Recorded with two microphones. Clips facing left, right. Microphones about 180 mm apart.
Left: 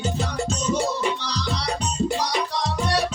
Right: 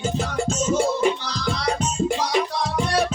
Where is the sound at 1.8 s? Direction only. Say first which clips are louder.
Right 1 dB; 40° left (ahead or behind).